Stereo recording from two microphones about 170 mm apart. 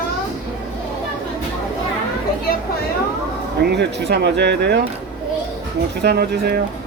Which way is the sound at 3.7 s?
85° right.